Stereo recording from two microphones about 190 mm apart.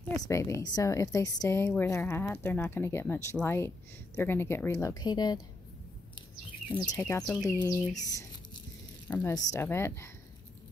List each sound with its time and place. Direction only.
0.2 s a woman's voice: 15° left (ahead or behind)
6.7 s a woman's voice: 20° left (ahead or behind)